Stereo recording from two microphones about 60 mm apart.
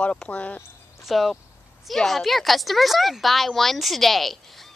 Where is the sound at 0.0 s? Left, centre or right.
Left.